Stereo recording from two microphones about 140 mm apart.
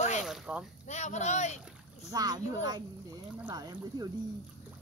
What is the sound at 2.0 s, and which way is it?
Speech, 25° right (ahead or behind).